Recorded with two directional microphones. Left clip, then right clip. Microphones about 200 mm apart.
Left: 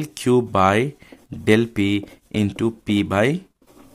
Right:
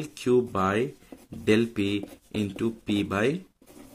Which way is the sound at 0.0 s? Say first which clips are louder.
Left 5 dB; 40° left (ahead or behind).